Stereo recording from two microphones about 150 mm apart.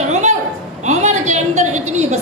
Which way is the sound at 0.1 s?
50° right (ahead or behind).